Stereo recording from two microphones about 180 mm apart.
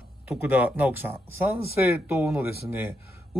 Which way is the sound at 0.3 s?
10° right (ahead or behind).